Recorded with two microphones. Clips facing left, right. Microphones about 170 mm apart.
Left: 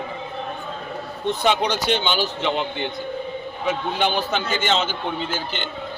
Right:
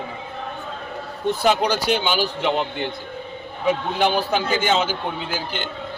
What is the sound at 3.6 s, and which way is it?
A man's voice, 5° right (ahead or behind).